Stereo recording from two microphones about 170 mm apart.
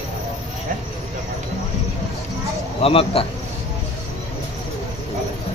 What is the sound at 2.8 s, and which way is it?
Speech, 35° left (ahead or behind).